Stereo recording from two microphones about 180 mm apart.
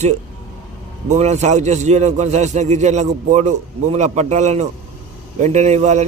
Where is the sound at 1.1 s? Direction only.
40° right (ahead or behind).